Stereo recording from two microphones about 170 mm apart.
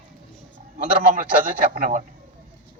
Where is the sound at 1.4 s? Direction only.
55° right (ahead or behind).